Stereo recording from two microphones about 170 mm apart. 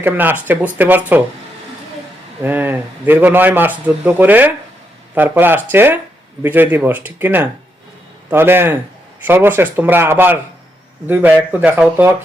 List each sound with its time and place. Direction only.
0.0 s a man's voice: 10° right (ahead or behind)
2.4 s a man's voice: 15° right (ahead or behind)